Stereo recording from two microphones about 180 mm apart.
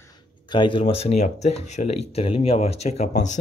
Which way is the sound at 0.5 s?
25° left (ahead or behind).